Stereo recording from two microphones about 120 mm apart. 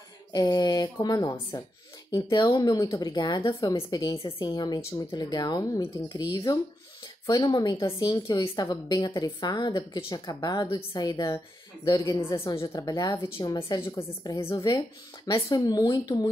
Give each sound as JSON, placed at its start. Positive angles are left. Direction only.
{"t": 0.3, "sound": "a woman's voice", "side_deg": 35}
{"t": 13.7, "sound": "a woman's voice", "side_deg": 20}